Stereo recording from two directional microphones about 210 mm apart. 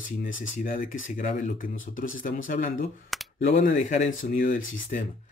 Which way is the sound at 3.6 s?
35° left (ahead or behind).